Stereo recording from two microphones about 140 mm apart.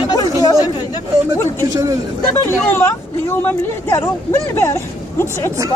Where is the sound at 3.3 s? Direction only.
15° left (ahead or behind).